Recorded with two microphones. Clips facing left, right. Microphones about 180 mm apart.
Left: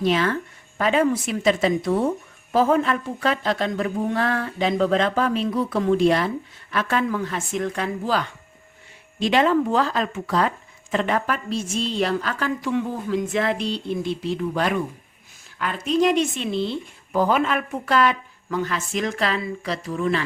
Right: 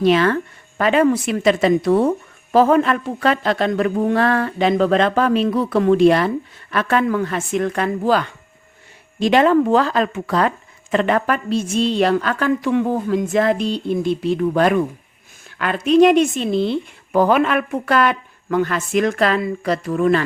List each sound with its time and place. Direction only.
0.0 s speech: 70° right (ahead or behind)
9.1 s speech: 50° right (ahead or behind)
13.3 s speech: 45° right (ahead or behind)
15.5 s speech: 75° right (ahead or behind)
16.3 s speech: 45° right (ahead or behind)
16.6 s speech: 65° right (ahead or behind)